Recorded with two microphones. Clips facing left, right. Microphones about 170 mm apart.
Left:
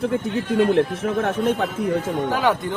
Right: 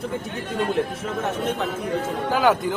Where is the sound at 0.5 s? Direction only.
60° left (ahead or behind).